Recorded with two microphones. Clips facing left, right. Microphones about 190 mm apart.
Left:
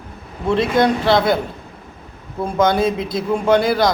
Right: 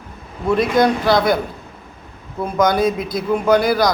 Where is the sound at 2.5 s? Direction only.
25° left (ahead or behind).